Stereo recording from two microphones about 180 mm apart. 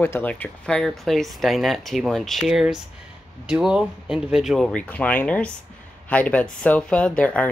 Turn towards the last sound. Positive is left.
turn(degrees=5)  # may be behind; listen again after turning